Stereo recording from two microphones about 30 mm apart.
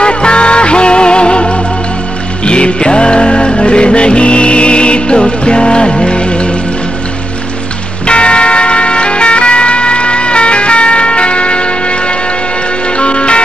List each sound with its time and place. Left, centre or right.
0.0 s music: left
8.1 s vehicle: left
12.9 s music: left